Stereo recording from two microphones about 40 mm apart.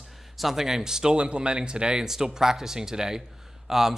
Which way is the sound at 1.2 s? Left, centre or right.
Right.